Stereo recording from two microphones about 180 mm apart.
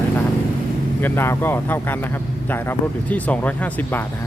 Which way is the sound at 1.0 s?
15° left (ahead or behind).